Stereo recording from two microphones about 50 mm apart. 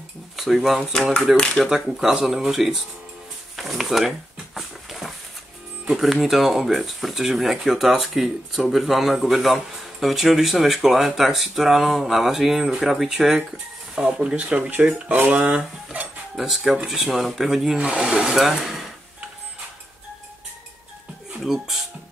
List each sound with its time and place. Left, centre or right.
0.4 s speech: centre
3.5 s a sound: centre
4.6 s dog: centre
6.2 s speech: centre; by 15.1 s right
15.1 s cutlery: right
16.3 s speech: centre
17.7 s speech: centre
21.5 s speech: centre